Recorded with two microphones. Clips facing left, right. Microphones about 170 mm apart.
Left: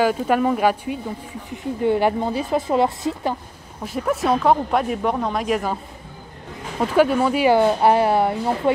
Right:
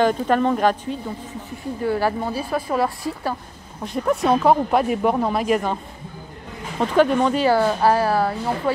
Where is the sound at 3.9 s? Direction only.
5° left (ahead or behind).